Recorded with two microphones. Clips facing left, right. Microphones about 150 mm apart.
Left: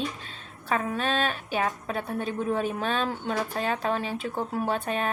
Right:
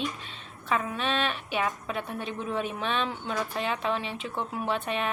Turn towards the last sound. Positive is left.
turn(degrees=40)  # may be behind; listen again after turning